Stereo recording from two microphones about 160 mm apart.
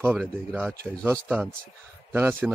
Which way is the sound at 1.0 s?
15° right (ahead or behind).